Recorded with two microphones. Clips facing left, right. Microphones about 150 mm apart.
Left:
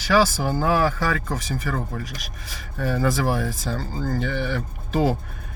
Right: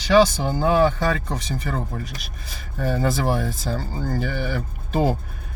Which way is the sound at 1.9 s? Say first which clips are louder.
Even; centre (ahead or behind).